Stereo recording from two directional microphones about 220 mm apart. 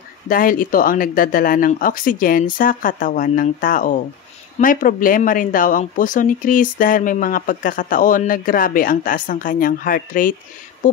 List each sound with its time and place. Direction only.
0.3 s speech: 40° left (ahead or behind)